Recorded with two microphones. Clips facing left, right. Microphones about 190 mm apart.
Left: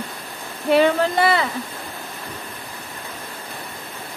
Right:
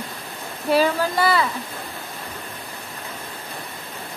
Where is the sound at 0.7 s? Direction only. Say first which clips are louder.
Left 3 dB; 25° left (ahead or behind).